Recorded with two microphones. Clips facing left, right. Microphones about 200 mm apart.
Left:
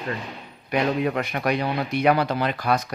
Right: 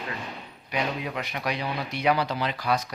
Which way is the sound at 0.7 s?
55° left (ahead or behind).